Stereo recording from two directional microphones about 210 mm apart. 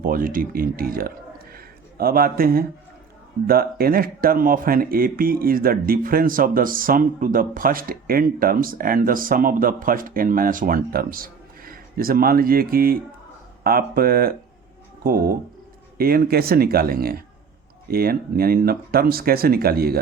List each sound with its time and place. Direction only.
0.0 s speech: 40° right (ahead or behind)
1.5 s a sound: 45° right (ahead or behind)
3.4 s speech: 45° right (ahead or behind)